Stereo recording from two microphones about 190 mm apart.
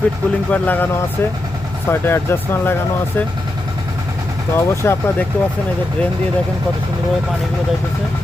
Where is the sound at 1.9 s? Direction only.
10° left (ahead or behind).